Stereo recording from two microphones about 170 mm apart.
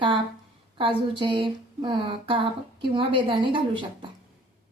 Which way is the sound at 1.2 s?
30° right (ahead or behind).